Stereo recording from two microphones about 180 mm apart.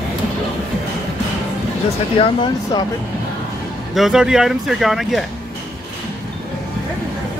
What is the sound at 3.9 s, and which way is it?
Speech, 5° right (ahead or behind).